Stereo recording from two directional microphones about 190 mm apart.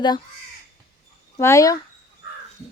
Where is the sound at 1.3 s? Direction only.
15° left (ahead or behind).